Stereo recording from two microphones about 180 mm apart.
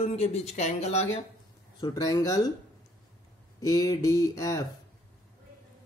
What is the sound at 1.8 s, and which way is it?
Speech, 20° left (ahead or behind).